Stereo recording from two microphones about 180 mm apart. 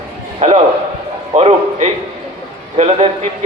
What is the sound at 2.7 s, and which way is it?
Speech, 35° right (ahead or behind).